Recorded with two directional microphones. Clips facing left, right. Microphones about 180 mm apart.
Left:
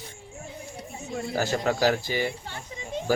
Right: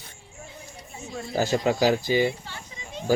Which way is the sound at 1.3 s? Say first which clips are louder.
Right 3 dB; 15° right (ahead or behind).